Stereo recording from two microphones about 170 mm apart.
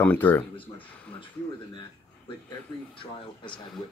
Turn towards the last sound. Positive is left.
turn(degrees=5)  # may be behind; listen again after turning